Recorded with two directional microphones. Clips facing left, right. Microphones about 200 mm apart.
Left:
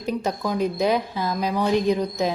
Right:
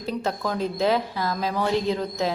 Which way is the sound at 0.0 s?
15° left (ahead or behind).